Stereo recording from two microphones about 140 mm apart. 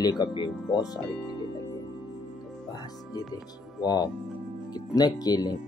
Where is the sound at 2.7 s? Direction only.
30° left (ahead or behind).